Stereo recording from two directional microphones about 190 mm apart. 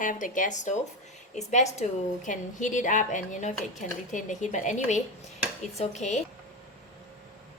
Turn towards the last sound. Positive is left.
turn(degrees=35)  # may be behind; listen again after turning